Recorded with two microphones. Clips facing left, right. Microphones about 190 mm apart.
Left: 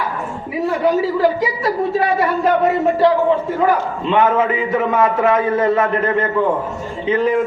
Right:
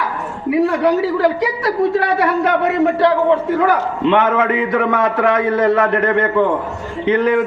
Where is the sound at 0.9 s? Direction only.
70° right (ahead or behind).